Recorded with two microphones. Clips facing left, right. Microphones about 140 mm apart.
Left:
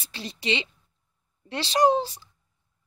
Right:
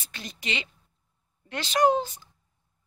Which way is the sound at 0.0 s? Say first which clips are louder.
Left 5 dB; 30° left (ahead or behind).